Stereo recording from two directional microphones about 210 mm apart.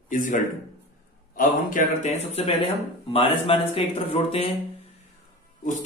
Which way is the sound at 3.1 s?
25° left (ahead or behind).